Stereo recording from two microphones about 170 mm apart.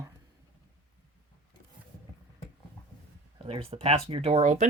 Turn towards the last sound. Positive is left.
turn(degrees=-45)  # may be behind; listen again after turning